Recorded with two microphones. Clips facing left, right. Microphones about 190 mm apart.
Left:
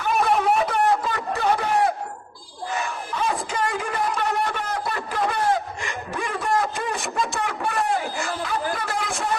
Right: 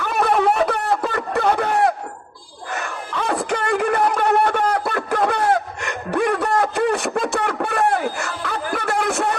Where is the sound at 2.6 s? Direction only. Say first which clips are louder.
Even; 65° right (ahead or behind).